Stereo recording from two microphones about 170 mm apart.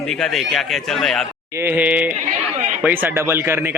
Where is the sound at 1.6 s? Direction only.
10° right (ahead or behind).